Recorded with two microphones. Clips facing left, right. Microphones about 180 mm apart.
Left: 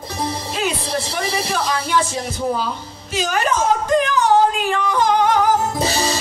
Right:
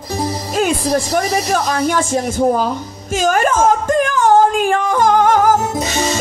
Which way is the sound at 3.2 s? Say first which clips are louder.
Right 5 dB; 50° right (ahead or behind).